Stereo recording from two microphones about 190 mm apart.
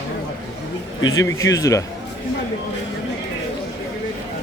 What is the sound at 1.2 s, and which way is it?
Speech, 15° left (ahead or behind).